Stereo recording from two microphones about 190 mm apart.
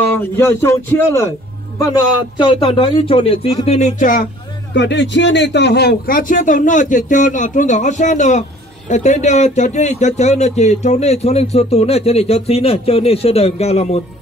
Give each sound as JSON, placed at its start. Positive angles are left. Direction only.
{"t": 0.2, "sound": "a man's voice", "side_deg": 15}
{"t": 2.3, "sound": "speech", "side_deg": 25}
{"t": 4.7, "sound": "a man's voice", "side_deg": 65}